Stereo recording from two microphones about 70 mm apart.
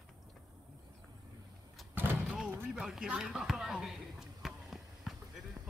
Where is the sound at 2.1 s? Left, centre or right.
Centre.